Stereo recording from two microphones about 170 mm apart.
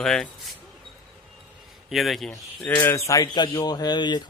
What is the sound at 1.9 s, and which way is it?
Speech, centre (ahead or behind).